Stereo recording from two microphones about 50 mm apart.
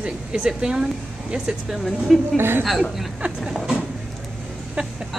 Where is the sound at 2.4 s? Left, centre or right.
Right.